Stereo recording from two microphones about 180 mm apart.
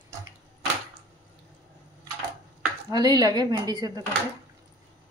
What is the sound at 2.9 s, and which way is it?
Speech, 20° right (ahead or behind).